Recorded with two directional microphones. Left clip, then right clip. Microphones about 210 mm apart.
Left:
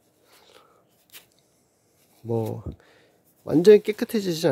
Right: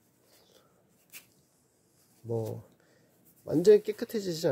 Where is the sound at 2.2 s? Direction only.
35° left (ahead or behind).